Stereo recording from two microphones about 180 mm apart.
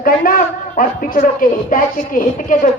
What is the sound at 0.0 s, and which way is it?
A man's voice, 50° left (ahead or behind).